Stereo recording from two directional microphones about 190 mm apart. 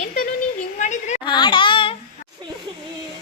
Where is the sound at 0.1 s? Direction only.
50° left (ahead or behind).